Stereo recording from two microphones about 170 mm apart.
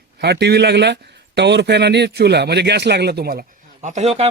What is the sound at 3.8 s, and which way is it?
Speech, 40° right (ahead or behind).